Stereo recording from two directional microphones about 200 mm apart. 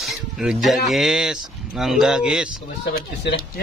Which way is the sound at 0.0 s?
Centre (ahead or behind).